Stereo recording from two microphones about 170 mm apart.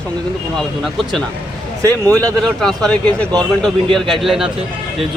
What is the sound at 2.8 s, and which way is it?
Speech, 5° left (ahead or behind).